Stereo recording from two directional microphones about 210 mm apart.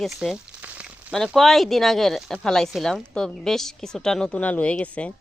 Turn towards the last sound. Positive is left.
turn(degrees=5)  # may be behind; listen again after turning